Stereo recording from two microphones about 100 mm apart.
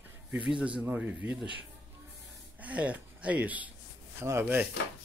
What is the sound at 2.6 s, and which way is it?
Speech, 15° right (ahead or behind).